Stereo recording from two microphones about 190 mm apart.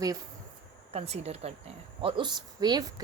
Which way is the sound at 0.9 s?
35° right (ahead or behind).